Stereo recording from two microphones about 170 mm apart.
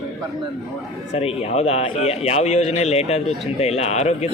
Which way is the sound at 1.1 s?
35° left (ahead or behind).